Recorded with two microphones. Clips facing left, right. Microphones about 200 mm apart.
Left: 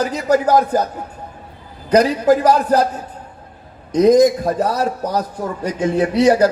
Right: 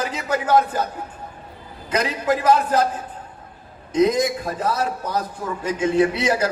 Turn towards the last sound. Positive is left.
turn(degrees=40)  # may be behind; listen again after turning